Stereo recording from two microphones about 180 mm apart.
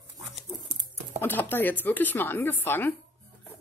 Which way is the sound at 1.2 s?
10° left (ahead or behind).